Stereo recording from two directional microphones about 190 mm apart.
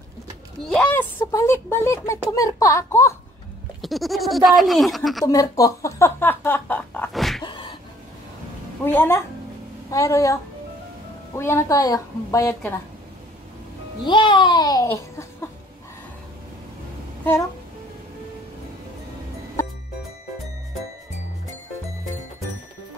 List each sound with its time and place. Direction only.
0.6 s speech: 10° left (ahead or behind)
3.8 s speech: centre (ahead or behind)
5.2 s speech: 20° left (ahead or behind); by 7.4 s centre (ahead or behind)
7.4 s a sound: 25° left (ahead or behind)
8.8 s speech: 10° left (ahead or behind)
14.0 s speech: 25° left (ahead or behind)